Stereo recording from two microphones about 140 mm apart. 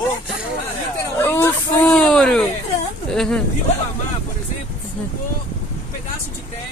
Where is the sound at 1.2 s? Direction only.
15° left (ahead or behind).